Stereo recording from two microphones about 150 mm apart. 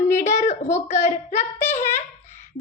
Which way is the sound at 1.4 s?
15° left (ahead or behind).